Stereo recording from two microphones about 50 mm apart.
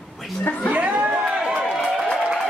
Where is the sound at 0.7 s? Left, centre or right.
Right.